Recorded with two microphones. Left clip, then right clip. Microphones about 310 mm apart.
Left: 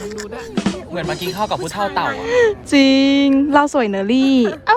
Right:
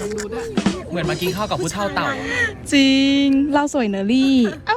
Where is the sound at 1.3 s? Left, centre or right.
Left.